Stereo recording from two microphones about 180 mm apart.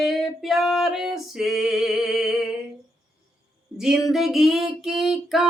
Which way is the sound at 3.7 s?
Centre (ahead or behind).